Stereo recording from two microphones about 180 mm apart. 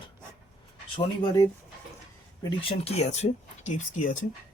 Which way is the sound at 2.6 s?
30° left (ahead or behind).